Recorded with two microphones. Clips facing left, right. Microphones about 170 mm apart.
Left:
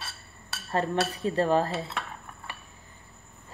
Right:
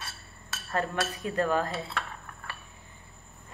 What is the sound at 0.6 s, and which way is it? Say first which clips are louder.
Cutlery: left 3 dB; 30° left (ahead or behind).